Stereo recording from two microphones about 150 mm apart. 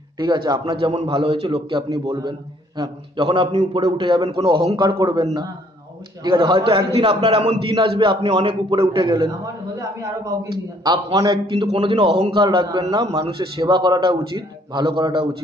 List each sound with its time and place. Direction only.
0.5 s a man's voice: 30° right (ahead or behind)